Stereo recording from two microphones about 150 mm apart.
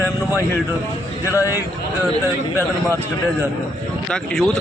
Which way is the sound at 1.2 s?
20° left (ahead or behind).